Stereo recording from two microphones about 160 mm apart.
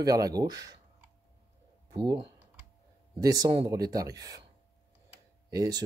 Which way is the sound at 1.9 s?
25° right (ahead or behind).